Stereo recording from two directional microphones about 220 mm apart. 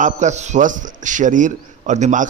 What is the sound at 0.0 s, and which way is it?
A man's voice, 30° right (ahead or behind).